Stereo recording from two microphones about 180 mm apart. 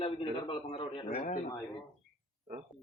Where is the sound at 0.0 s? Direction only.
30° left (ahead or behind).